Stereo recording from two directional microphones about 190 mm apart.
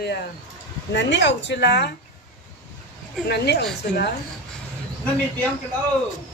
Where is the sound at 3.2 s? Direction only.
60° left (ahead or behind).